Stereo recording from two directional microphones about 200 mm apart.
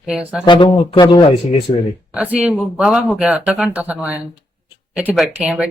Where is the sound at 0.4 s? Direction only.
25° left (ahead or behind).